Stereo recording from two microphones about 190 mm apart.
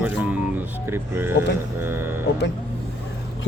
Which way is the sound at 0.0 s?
10° right (ahead or behind).